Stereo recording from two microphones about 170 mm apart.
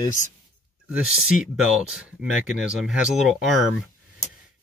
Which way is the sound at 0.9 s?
5° right (ahead or behind).